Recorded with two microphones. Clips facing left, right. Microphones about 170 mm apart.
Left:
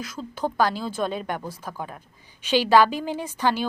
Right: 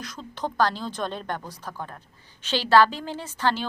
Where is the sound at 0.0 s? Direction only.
5° left (ahead or behind).